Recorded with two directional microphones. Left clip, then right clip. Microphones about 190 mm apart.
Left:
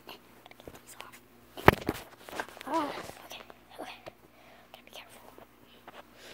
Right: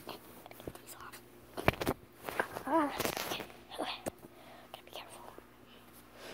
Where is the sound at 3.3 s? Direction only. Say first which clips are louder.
Right 5 dB; 10° right (ahead or behind).